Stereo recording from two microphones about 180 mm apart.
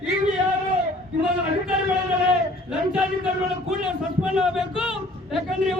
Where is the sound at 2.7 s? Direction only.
5° right (ahead or behind).